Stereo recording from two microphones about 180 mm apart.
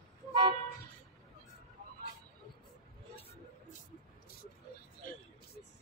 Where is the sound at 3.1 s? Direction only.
35° left (ahead or behind).